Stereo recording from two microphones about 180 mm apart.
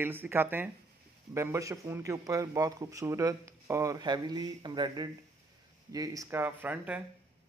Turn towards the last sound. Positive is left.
turn(degrees=-10)  # may be behind; listen again after turning